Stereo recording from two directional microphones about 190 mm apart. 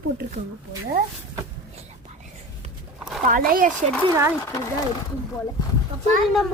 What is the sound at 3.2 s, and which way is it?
Speech, 50° right (ahead or behind).